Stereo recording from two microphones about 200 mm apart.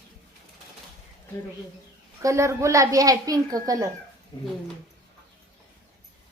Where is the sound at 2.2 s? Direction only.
15° right (ahead or behind).